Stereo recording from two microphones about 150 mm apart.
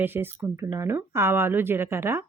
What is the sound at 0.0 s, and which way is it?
Speech, 15° right (ahead or behind).